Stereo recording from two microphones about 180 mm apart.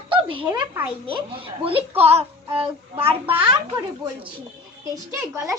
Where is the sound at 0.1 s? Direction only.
30° right (ahead or behind).